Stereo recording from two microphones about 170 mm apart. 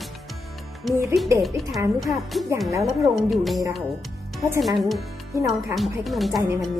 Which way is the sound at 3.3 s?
Centre (ahead or behind).